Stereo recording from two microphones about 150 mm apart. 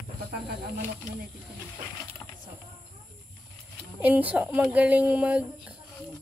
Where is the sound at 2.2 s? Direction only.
15° left (ahead or behind).